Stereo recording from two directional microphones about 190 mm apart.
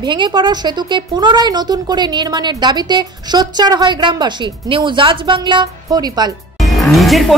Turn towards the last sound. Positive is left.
turn(degrees=0)  # may be behind; listen again after turning